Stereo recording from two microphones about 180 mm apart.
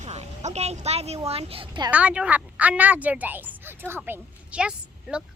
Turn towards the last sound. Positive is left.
turn(degrees=-5)  # may be behind; listen again after turning